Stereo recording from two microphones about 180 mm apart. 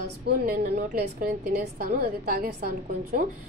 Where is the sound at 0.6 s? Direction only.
60° right (ahead or behind).